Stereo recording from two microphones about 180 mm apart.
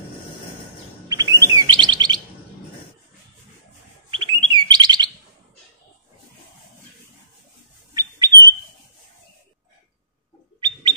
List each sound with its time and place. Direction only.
1.0 s chirp: 20° right (ahead or behind)
4.1 s bird: 25° right (ahead or behind)
7.9 s squawk: 20° right (ahead or behind)
10.6 s bird: 25° right (ahead or behind)